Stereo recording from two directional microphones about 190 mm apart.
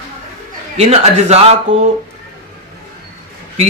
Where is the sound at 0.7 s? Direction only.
35° right (ahead or behind).